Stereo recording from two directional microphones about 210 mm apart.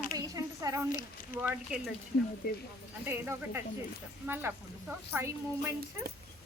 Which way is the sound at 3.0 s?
10° right (ahead or behind).